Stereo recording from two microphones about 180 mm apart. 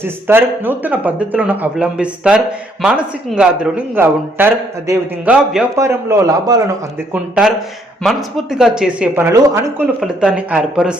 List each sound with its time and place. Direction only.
0.3 s speech: 10° right (ahead or behind)
7.1 s speech: 5° right (ahead or behind)